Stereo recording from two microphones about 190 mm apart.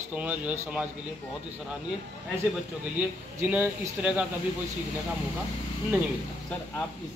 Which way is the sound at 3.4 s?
10° right (ahead or behind).